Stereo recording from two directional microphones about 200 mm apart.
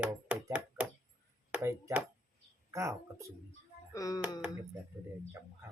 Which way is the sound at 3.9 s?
15° left (ahead or behind).